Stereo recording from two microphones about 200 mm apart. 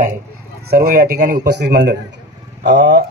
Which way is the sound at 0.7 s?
50° right (ahead or behind).